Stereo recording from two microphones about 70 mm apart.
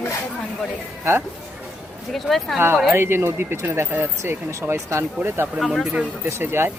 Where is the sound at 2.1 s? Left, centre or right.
Centre.